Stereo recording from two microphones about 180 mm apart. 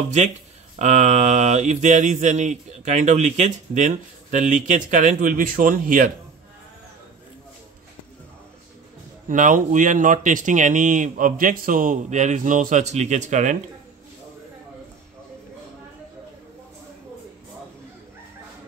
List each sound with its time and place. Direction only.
0.7 s mantra: 40° right (ahead or behind)
9.3 s speech: 45° right (ahead or behind)